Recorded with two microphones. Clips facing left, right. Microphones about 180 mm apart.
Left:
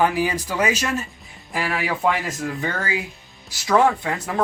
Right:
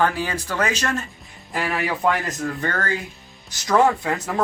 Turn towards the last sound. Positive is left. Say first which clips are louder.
# even
turn(degrees=0)  # may be behind; listen again after turning